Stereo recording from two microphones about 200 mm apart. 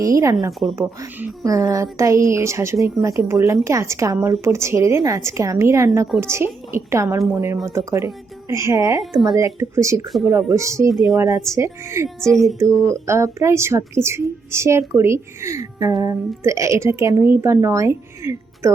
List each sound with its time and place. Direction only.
0.0 s a woman's voice: 15° right (ahead or behind)
0.6 s speech: 5° right (ahead or behind)
1.5 s a woman's voice: 15° right (ahead or behind)
10.1 s speech: centre (ahead or behind)
10.3 s a woman's voice: 15° right (ahead or behind)
10.9 s speech: centre (ahead or behind)
11.2 s a woman's voice: 15° right (ahead or behind)
12.0 s speech: centre (ahead or behind)
12.5 s a woman's voice: 15° right (ahead or behind)